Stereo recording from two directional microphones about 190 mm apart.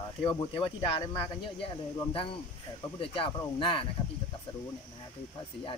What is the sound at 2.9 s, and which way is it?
Speech, 25° left (ahead or behind).